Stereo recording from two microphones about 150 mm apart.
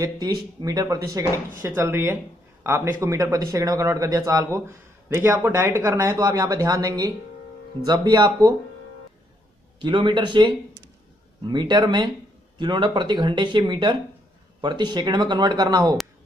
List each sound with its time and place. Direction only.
0.0 s speech: 25° right (ahead or behind)
9.8 s speech: 30° right (ahead or behind)